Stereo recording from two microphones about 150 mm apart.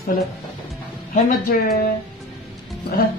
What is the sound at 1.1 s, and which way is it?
Speech, 75° left (ahead or behind).